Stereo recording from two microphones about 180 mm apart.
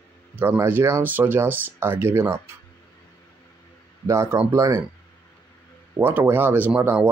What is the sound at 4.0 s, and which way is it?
Speech, 15° right (ahead or behind).